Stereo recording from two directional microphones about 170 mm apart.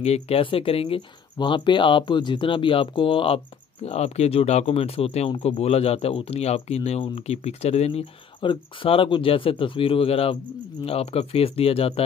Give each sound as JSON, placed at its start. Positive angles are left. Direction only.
{"t": 0.0, "sound": "speech", "side_deg": 40}